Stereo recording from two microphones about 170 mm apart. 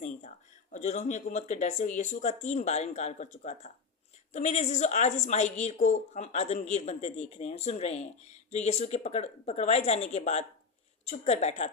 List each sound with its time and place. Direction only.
0.0 s a woman's voice: 45° left (ahead or behind)